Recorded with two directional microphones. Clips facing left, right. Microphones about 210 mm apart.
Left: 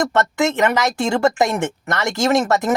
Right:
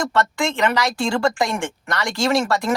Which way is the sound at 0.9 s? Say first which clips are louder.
Left 3 dB; 20° left (ahead or behind).